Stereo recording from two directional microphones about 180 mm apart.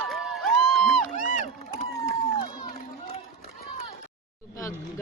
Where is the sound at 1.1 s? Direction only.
45° left (ahead or behind).